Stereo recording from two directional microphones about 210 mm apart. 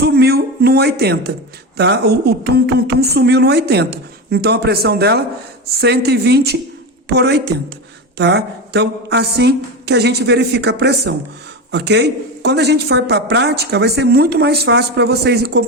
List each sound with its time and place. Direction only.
0.0 s speech: 50° right (ahead or behind)